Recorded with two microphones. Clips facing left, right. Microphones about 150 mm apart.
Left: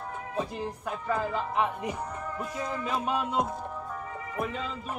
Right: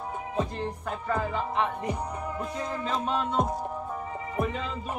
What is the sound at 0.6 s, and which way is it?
Music, 5° left (ahead or behind).